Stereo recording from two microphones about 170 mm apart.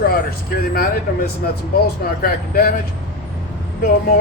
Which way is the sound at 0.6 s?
60° left (ahead or behind).